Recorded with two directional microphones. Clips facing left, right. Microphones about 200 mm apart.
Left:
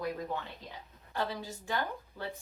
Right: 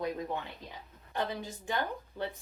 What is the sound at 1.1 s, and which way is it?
Speech, 20° right (ahead or behind).